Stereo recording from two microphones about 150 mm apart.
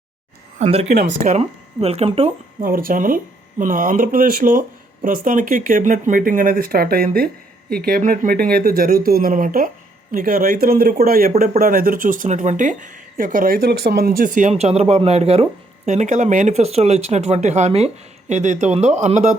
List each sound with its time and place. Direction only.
0.6 s speech: 45° right (ahead or behind)
2.6 s speech: 70° right (ahead or behind); by 19.4 s 50° right (ahead or behind)